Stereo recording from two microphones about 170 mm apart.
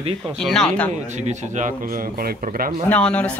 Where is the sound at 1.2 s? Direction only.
45° right (ahead or behind).